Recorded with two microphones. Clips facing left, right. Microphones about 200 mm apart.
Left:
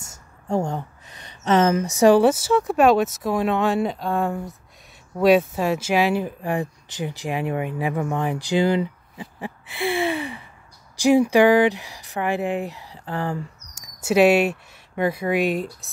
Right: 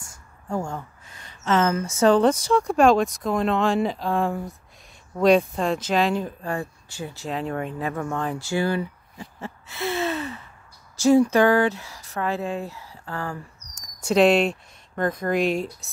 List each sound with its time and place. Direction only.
0.5 s a woman's voice: 20° left (ahead or behind)
13.7 s speech: 5° left (ahead or behind)